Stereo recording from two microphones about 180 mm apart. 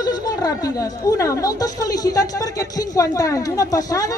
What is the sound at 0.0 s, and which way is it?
A woman's voice, 20° left (ahead or behind).